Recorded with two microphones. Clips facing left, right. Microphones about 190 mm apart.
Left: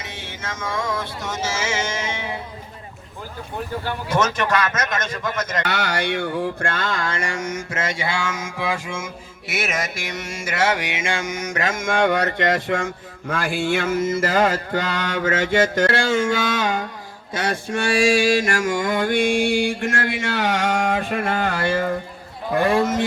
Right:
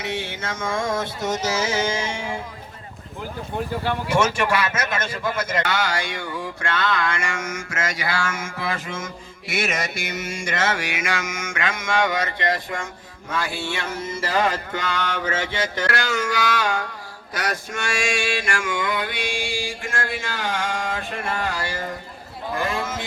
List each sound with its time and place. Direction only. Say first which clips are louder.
0.0 s music: right 6 dB; 60° right (ahead or behind); by 2.2 s 30° right (ahead or behind)
4.1 s a man's voice: left 1 dB; 10° right (ahead or behind)
5.6 s a sound: left 1 dB; 65° left (ahead or behind)
14.0 s mantra: left 1 dB; 45° left (ahead or behind)
15.9 s music: left 5 dB; 30° left (ahead or behind); by 22.8 s 60° left (ahead or behind)